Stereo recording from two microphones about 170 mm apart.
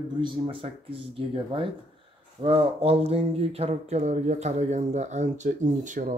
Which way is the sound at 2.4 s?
35° right (ahead or behind).